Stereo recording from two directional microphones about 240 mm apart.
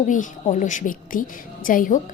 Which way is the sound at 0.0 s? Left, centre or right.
Left.